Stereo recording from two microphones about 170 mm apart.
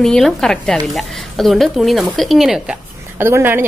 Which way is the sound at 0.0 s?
5° left (ahead or behind).